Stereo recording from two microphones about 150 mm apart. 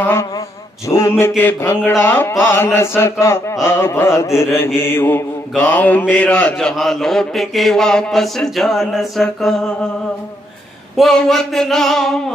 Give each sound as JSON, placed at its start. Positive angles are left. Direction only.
{"t": 0.0, "sound": "chant", "side_deg": 15}
{"t": 0.8, "sound": "mantra", "side_deg": 20}
{"t": 1.4, "sound": "chant", "side_deg": 15}
{"t": 6.7, "sound": "mantra", "side_deg": 0}
{"t": 11.0, "sound": "mantra", "side_deg": 5}